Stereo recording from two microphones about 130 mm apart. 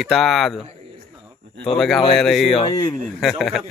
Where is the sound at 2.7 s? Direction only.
30° left (ahead or behind).